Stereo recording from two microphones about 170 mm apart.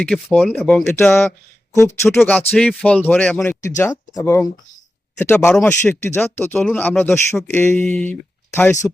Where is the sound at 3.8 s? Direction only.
20° left (ahead or behind).